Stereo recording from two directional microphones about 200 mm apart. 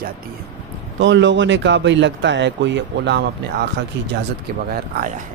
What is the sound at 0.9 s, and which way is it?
Speech, 65° right (ahead or behind).